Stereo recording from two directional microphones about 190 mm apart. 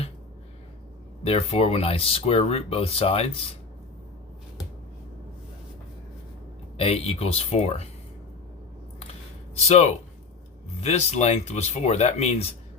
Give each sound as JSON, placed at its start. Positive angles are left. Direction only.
{"t": 1.2, "sound": "speech", "side_deg": 30}
{"t": 6.7, "sound": "speech", "side_deg": 30}
{"t": 9.6, "sound": "speech", "side_deg": 35}